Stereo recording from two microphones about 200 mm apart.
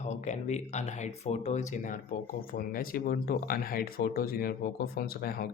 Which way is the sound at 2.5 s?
45° left (ahead or behind).